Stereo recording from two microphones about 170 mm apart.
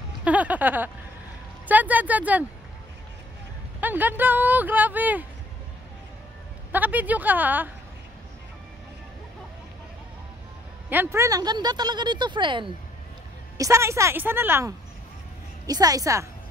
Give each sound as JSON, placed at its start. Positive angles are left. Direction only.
{"t": 0.2, "sound": "speech", "side_deg": -10}
{"t": 3.8, "sound": "speech", "side_deg": -10}
{"t": 6.7, "sound": "speech", "side_deg": -10}
{"t": 10.9, "sound": "speech", "side_deg": -10}
{"t": 13.6, "sound": "speech", "side_deg": -15}